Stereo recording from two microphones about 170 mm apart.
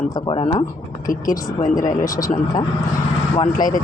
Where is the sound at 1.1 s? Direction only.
20° left (ahead or behind).